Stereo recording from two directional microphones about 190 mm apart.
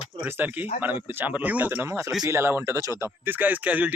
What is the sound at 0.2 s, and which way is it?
Speech, 10° right (ahead or behind).